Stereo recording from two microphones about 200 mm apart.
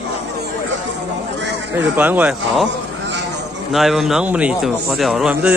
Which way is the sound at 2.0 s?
10° right (ahead or behind).